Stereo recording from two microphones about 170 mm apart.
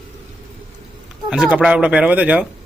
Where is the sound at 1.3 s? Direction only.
5° right (ahead or behind).